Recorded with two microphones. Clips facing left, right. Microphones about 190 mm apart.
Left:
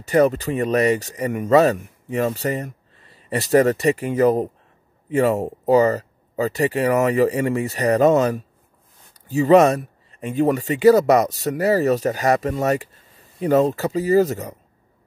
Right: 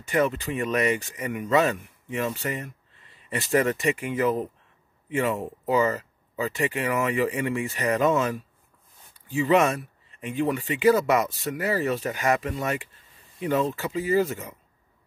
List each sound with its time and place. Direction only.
0.0 s speech: 40° left (ahead or behind)